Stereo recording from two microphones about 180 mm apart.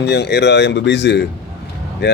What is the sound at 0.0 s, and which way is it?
A man's voice, 70° left (ahead or behind).